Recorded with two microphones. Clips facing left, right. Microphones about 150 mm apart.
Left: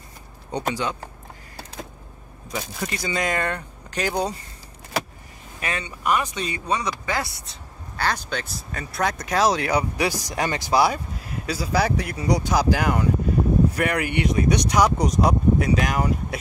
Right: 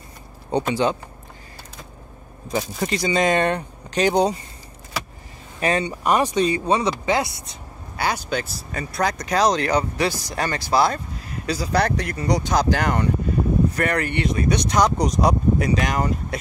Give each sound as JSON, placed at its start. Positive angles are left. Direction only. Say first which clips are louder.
{"t": 0.5, "sound": "speech", "louder": "right 7 dB", "side_deg": -25}
{"t": 2.5, "sound": "speech", "louder": "right 6 dB", "side_deg": -35}
{"t": 5.6, "sound": "speech", "louder": "right 8 dB", "side_deg": -35}